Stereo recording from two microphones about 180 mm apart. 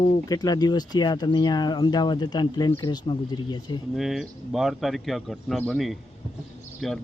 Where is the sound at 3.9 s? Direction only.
Centre (ahead or behind).